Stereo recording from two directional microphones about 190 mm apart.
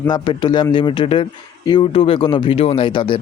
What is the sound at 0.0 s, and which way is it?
A man's voice, 25° left (ahead or behind).